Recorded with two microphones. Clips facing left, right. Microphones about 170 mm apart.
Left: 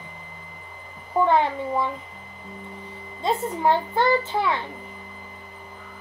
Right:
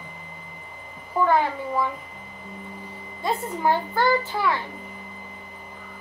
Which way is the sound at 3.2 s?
25° left (ahead or behind).